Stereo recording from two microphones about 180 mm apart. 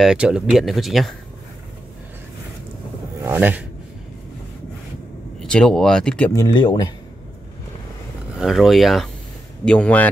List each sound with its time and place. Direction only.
0.0 s speech: 5° right (ahead or behind)
3.3 s speech: 10° right (ahead or behind)
5.4 s speech: 5° left (ahead or behind)
6.3 s speech: 20° left (ahead or behind)
8.4 s speech: centre (ahead or behind)